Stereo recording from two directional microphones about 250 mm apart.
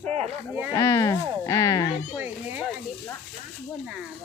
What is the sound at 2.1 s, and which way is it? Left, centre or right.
Speech, centre.